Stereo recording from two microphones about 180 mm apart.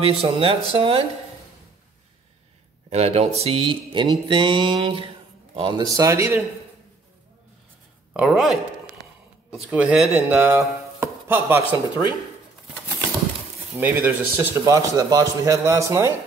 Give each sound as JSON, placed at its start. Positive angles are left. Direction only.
{"t": 0.0, "sound": "speech", "side_deg": -30}
{"t": 2.9, "sound": "mantra", "side_deg": -35}
{"t": 8.1, "sound": "speech", "side_deg": 0}
{"t": 10.1, "sound": "chopping", "side_deg": -10}
{"t": 13.7, "sound": "a man's voice", "side_deg": -10}